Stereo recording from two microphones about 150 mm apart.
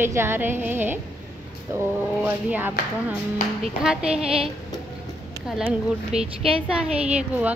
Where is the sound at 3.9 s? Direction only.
5° right (ahead or behind).